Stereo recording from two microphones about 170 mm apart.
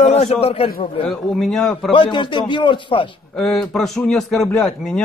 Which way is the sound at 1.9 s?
30° left (ahead or behind).